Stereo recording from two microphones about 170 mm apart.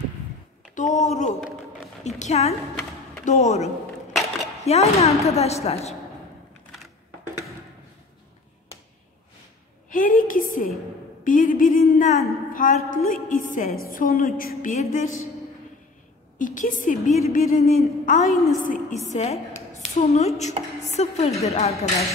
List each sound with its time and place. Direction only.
0.7 s a woman's voice: 45° left (ahead or behind)
4.1 s a sound: centre (ahead or behind)
4.6 s a woman's voice: 40° left (ahead or behind)
9.8 s a sound: 55° left (ahead or behind)
11.2 s a woman's voice: 50° left (ahead or behind)
16.3 s a woman's voice: 50° left (ahead or behind)
19.0 s a woman's voice: 40° left (ahead or behind)